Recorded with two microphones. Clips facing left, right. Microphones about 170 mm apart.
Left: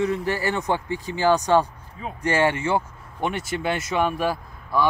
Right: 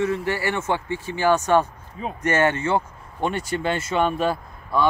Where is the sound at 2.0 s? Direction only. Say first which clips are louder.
Right 4 dB; 20° right (ahead or behind).